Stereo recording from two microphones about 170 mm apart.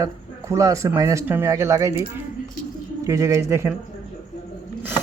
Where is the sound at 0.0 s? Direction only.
20° right (ahead or behind).